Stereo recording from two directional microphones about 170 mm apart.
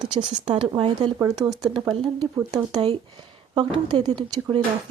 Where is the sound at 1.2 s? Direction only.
20° right (ahead or behind).